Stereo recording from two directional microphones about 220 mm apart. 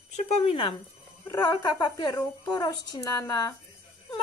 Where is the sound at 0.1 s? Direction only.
25° left (ahead or behind).